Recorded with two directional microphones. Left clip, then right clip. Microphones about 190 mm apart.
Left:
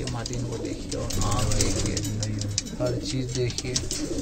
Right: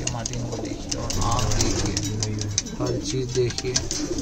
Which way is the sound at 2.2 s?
50° right (ahead or behind).